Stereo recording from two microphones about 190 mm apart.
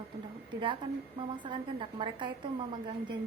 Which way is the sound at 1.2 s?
25° right (ahead or behind).